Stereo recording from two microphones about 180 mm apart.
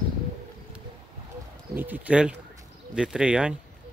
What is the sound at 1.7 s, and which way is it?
Speech, 10° right (ahead or behind).